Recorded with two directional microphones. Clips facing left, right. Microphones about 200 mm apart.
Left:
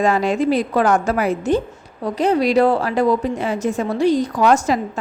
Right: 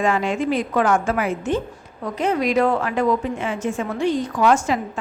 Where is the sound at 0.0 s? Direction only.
40° left (ahead or behind).